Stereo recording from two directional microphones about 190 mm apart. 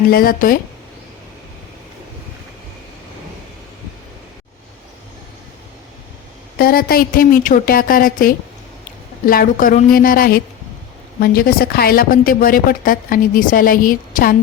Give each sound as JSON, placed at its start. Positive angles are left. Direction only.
{"t": 0.1, "sound": "a woman's voice", "side_deg": 50}
{"t": 6.6, "sound": "a woman's voice", "side_deg": 50}